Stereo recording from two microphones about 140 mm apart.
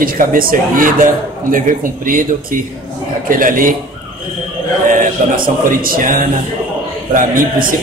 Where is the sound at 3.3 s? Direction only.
80° right.